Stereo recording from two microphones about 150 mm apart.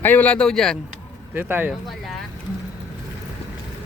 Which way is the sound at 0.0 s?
10° left (ahead or behind).